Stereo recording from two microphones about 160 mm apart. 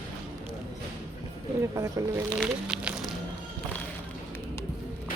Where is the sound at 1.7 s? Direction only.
20° right (ahead or behind).